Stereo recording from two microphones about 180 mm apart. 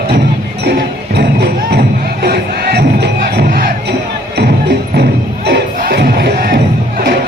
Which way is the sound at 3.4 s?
55° right (ahead or behind).